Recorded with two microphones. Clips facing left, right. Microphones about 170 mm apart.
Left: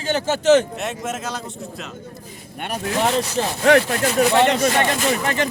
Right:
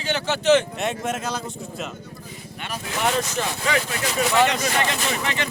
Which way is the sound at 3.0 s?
30° left (ahead or behind).